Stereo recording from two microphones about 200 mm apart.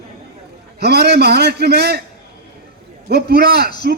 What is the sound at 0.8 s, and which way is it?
A man's voice, 55° right (ahead or behind).